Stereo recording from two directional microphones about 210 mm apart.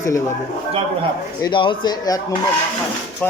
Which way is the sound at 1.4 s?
20° left (ahead or behind).